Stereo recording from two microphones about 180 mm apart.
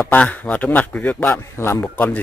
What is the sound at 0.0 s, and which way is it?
A man's voice, 10° left (ahead or behind).